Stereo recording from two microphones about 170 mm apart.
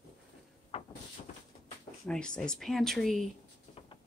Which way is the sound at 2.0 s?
5° left (ahead or behind).